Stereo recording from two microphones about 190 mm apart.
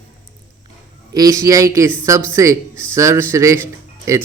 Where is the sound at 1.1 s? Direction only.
20° right (ahead or behind).